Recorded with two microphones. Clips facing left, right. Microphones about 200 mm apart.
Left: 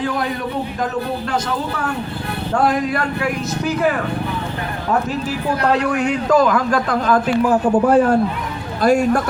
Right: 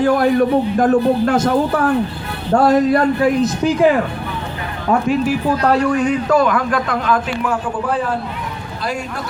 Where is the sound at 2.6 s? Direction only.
25° right (ahead or behind).